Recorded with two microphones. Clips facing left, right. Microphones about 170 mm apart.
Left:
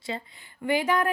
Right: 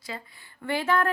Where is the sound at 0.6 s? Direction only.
15° left (ahead or behind).